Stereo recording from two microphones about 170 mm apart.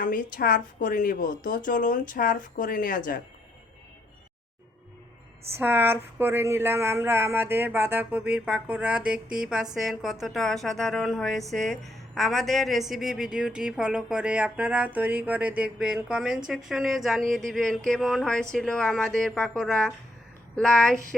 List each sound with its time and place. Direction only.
0.0 s a woman's voice: 55° left (ahead or behind)
5.5 s speech: 10° right (ahead or behind); by 21.2 s 5° left (ahead or behind)